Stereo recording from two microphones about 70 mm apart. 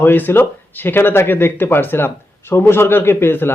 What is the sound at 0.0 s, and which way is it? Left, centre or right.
A man's voice, left.